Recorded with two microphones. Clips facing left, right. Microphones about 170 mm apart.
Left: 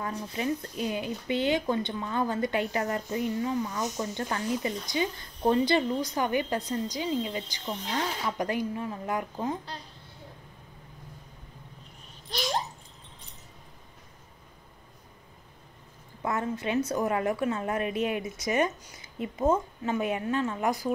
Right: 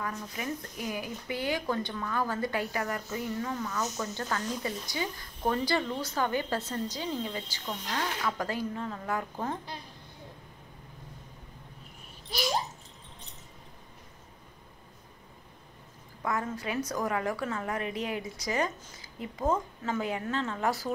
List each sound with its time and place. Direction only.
0.0 s speech: 30° left (ahead or behind)
16.2 s speech: 25° left (ahead or behind)